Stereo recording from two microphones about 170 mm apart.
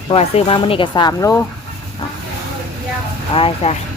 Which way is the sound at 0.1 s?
35° left (ahead or behind).